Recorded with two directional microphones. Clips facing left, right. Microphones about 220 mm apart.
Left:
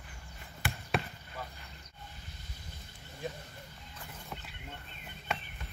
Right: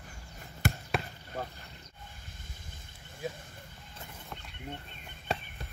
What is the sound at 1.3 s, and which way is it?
Roaring cats, 45° right (ahead or behind).